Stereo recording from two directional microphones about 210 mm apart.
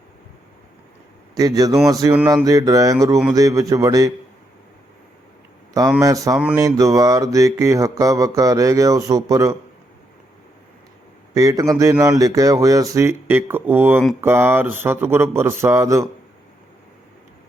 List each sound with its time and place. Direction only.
1.4 s mantra: 15° right (ahead or behind)
6.0 s mantra: 15° right (ahead or behind)
11.3 s mantra: 15° right (ahead or behind)